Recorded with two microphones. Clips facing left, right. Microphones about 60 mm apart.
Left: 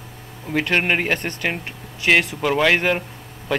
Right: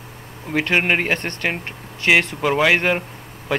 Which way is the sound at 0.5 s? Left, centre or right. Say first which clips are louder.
Right 1 dB; centre.